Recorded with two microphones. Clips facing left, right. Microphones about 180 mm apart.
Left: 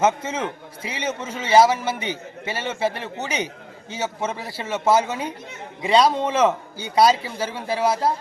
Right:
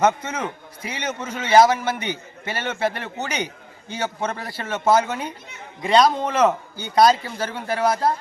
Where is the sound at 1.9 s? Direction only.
30° left (ahead or behind).